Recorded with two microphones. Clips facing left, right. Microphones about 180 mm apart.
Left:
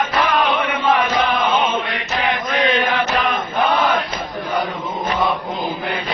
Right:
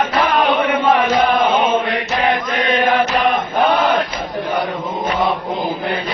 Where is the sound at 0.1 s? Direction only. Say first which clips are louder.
Right 2 dB; 40° right (ahead or behind).